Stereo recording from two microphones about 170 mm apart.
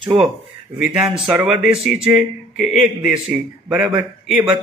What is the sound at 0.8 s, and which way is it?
A man's voice, 5° right (ahead or behind).